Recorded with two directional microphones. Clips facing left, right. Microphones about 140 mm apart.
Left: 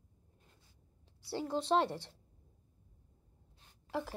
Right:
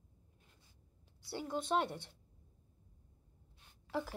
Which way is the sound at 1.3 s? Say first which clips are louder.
Left 4 dB; 30° left (ahead or behind).